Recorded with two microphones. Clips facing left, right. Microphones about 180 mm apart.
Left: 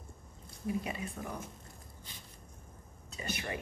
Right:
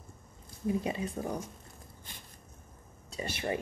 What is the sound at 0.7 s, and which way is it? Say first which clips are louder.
Speech: right 5 dB; 30° right (ahead or behind).